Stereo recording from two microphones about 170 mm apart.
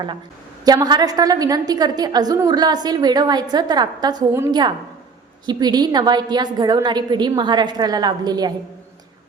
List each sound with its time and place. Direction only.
0.6 s a woman's voice: 20° right (ahead or behind)